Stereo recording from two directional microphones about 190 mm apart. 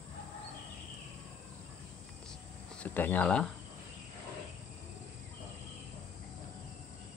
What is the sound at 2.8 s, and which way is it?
Speech, 10° left (ahead or behind).